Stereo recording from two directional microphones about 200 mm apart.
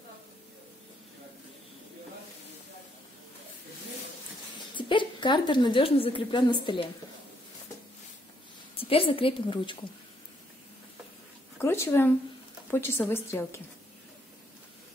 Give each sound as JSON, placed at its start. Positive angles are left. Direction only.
{"t": 4.7, "sound": "a woman's voice", "side_deg": 25}
{"t": 8.7, "sound": "a woman's voice", "side_deg": 30}
{"t": 11.6, "sound": "a woman's voice", "side_deg": 10}